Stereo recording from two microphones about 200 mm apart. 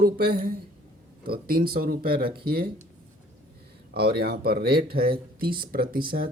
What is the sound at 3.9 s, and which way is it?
Speech, 50° right (ahead or behind).